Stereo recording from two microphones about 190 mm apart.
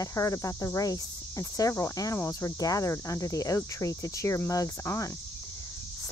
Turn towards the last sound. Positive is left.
turn(degrees=15)  # may be behind; listen again after turning